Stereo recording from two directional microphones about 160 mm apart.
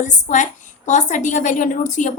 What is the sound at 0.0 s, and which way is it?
Speech, 50° left (ahead or behind).